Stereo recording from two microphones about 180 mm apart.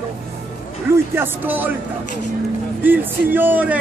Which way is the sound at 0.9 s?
10° right (ahead or behind).